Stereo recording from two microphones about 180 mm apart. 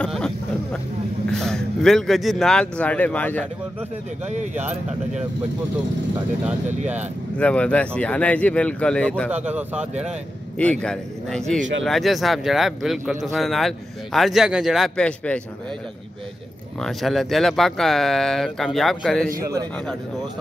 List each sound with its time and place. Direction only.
0.0 s speech: 5° left (ahead or behind)
1.3 s speech: 5° left (ahead or behind)
4.3 s speech: 40° right (ahead or behind)
7.3 s speech: 5° left (ahead or behind)
9.5 s speech: 10° right (ahead or behind)
10.6 s speech: 5° left (ahead or behind)
16.8 s speech: centre (ahead or behind)